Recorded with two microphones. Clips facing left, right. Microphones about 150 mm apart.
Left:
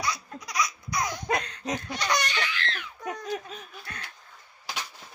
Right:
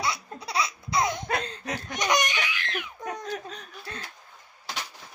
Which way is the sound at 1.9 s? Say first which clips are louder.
Right 5 dB; 20° right (ahead or behind).